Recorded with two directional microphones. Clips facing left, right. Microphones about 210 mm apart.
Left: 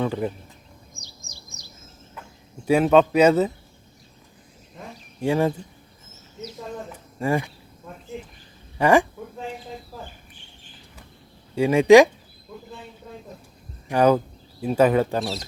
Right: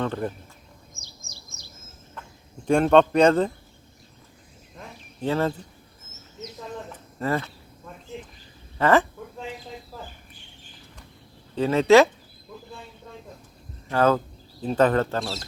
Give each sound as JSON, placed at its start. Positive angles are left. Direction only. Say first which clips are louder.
{"t": 0.0, "sound": "speech", "louder": "left 2 dB", "side_deg": 10}
{"t": 0.9, "sound": "bird", "louder": "left 1 dB", "side_deg": 15}
{"t": 2.6, "sound": "speech", "louder": "left 1 dB", "side_deg": 5}
{"t": 5.2, "sound": "speech", "louder": "left 3 dB", "side_deg": 15}
{"t": 7.2, "sound": "speech", "louder": "left 3 dB", "side_deg": 15}
{"t": 8.8, "sound": "speech", "louder": "left 2 dB", "side_deg": 15}
{"t": 11.5, "sound": "speech", "louder": "left 3 dB", "side_deg": 10}
{"t": 13.8, "sound": "speech", "louder": "left 3 dB", "side_deg": 15}